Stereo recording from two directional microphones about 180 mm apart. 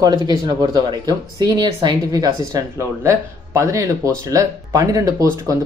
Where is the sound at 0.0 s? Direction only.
20° right (ahead or behind).